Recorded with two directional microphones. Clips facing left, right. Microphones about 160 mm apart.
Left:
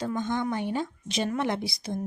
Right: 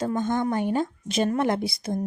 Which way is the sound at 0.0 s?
45° right (ahead or behind).